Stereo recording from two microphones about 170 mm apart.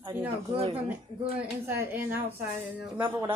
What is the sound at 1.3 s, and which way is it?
Speech, 10° right (ahead or behind).